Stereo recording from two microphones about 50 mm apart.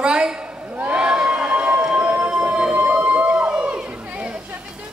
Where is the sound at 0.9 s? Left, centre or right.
Centre.